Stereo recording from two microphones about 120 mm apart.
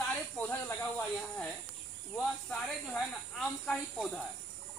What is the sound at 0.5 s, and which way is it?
Speech, 20° left (ahead or behind).